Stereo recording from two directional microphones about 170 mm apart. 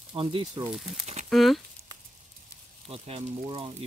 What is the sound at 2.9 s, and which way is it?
Speech, 35° right (ahead or behind).